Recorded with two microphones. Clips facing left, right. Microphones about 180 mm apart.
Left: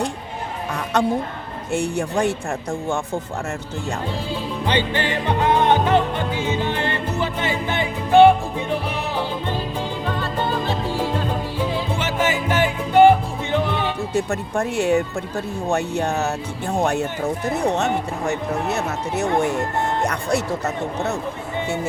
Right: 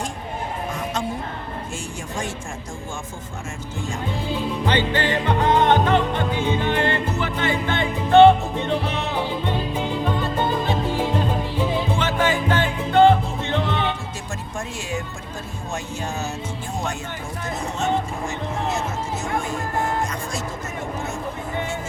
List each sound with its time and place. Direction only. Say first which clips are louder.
0.7 s a sound: left 8 dB; 65° left (ahead or behind)
1.7 s speech: left 14 dB; 65° left (ahead or behind)
4.6 s music: left 1 dB; 15° left (ahead or behind)
9.5 s music: right 1 dB; 15° right (ahead or behind)
12.1 s music: left 1 dB; 20° left (ahead or behind)
14.1 s speech: left 10 dB; 65° left (ahead or behind)